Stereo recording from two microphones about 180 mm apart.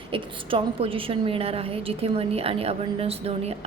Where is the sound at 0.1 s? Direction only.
30° right (ahead or behind).